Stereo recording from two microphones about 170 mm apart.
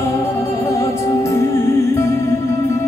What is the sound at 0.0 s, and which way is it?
Music, 15° left (ahead or behind).